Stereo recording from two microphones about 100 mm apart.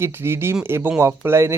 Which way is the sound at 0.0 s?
25° right (ahead or behind).